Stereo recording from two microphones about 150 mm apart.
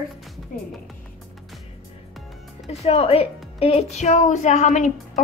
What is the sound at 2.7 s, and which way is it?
A woman's voice, 45° left (ahead or behind).